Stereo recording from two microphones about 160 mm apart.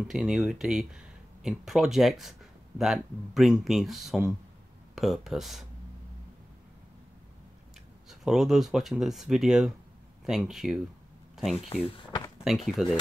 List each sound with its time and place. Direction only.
0.1 s speech: 5° right (ahead or behind)
8.1 s speech: centre (ahead or behind)
11.7 s speech: 35° left (ahead or behind)
12.4 s speech: centre (ahead or behind)